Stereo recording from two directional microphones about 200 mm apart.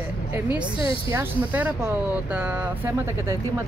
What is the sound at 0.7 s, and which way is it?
Speech, 25° left (ahead or behind).